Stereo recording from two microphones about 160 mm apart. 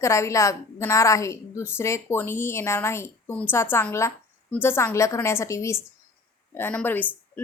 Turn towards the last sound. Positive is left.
turn(degrees=10)  # may be behind; listen again after turning